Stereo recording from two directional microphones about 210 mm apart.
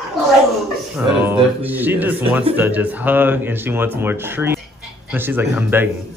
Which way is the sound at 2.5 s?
10° right (ahead or behind).